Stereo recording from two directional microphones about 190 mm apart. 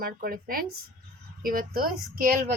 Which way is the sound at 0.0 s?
50° right (ahead or behind).